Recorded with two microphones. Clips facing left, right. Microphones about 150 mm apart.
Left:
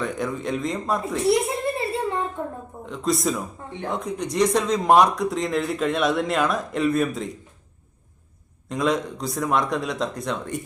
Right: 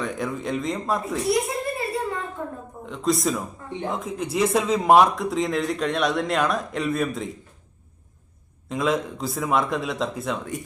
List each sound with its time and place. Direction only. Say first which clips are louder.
0.0 s a man's voice: left 1 dB; centre (ahead or behind)
1.2 s a sound: left 5 dB; 25° left (ahead or behind)
2.8 s a man's voice: even; centre (ahead or behind)
8.7 s a man's voice: left 1 dB; centre (ahead or behind)